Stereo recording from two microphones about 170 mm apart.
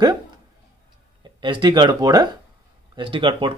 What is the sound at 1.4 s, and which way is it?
Speech, 30° right (ahead or behind).